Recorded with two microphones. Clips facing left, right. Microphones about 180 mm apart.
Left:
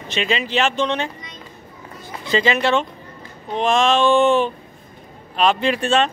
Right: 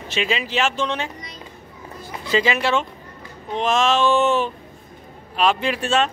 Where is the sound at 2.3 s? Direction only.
5° right (ahead or behind).